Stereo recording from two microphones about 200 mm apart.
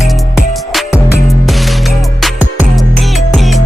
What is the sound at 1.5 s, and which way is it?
Music, centre (ahead or behind).